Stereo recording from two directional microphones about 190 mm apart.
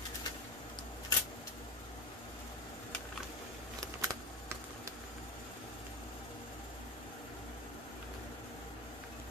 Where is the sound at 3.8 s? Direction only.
15° right (ahead or behind).